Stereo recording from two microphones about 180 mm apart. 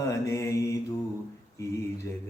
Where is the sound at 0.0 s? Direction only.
15° left (ahead or behind).